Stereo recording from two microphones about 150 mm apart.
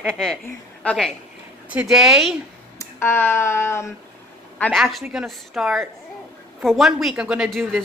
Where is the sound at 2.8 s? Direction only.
15° left (ahead or behind).